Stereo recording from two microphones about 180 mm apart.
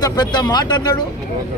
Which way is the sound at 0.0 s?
20° left (ahead or behind).